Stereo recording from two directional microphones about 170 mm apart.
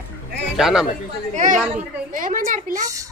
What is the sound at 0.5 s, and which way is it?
Speech, centre (ahead or behind).